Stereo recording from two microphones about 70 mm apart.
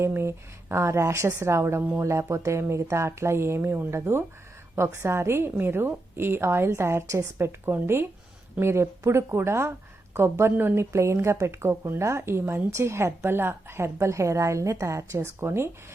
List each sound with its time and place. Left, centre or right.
0.0 s a woman's voice: right